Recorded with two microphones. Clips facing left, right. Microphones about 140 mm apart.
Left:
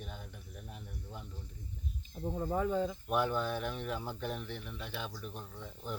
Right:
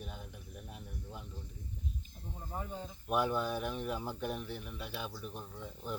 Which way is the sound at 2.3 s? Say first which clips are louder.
Left 10 dB; 90° left.